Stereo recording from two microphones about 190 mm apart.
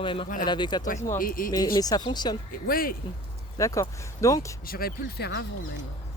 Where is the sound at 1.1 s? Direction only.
45° left (ahead or behind).